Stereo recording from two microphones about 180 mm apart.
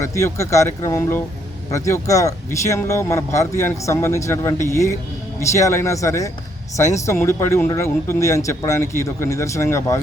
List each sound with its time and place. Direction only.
0.0 s speech: 15° left (ahead or behind)